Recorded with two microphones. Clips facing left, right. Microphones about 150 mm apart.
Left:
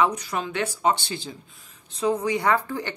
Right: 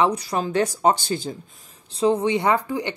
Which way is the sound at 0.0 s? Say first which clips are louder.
Right 3 dB; 35° right (ahead or behind).